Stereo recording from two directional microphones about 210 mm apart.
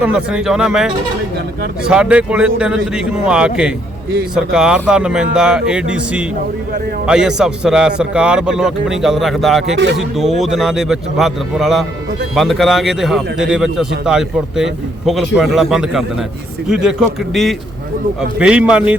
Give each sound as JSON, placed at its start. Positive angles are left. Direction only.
{"t": 0.0, "sound": "a man's voice", "side_deg": -5}
{"t": 9.7, "sound": "speech", "side_deg": -55}
{"t": 10.0, "sound": "a man's voice", "side_deg": 0}